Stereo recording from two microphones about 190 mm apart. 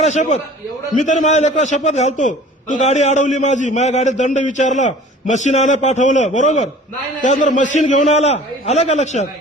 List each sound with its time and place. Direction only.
0.0 s a man's voice: 35° left (ahead or behind)